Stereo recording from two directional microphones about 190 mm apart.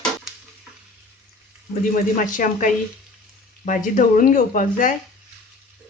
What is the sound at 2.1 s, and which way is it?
Speech, 45° left (ahead or behind).